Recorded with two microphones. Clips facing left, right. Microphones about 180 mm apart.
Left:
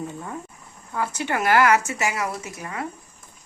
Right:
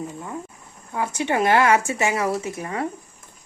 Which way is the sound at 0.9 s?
20° right (ahead or behind).